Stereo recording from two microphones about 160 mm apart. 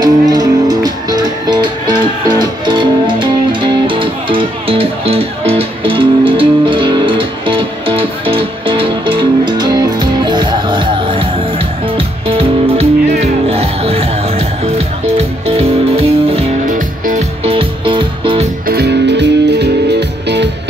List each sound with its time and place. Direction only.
0.0 s music: 25° right (ahead or behind)
16.6 s music: 55° right (ahead or behind)
17.5 s music: 35° right (ahead or behind)
18.7 s music: 85° right